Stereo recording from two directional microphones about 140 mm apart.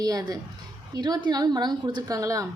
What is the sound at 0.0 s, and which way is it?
A woman's voice, 30° right (ahead or behind).